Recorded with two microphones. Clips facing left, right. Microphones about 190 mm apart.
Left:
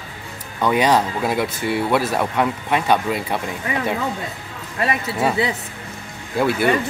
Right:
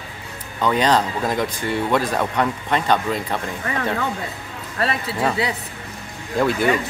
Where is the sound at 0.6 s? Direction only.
10° left (ahead or behind).